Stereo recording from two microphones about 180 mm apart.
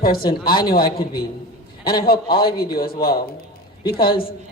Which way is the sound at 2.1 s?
30° left (ahead or behind).